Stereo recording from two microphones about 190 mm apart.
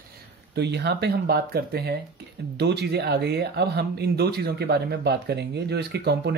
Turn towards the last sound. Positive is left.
turn(degrees=-60)  # may be behind; listen again after turning